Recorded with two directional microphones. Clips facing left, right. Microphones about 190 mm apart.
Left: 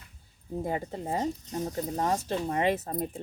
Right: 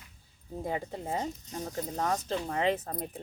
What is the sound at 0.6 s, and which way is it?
Speech, 40° left (ahead or behind).